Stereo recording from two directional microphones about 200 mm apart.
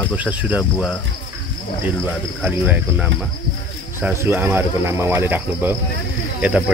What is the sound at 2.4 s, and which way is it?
Speech, 5° right (ahead or behind).